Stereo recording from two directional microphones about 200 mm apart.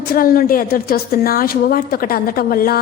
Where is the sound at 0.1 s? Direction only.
45° left (ahead or behind).